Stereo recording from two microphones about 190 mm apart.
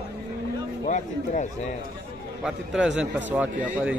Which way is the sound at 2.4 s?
5° right (ahead or behind).